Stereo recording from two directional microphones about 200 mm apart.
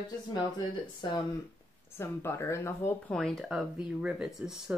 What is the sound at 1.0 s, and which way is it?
Speech, 25° left (ahead or behind).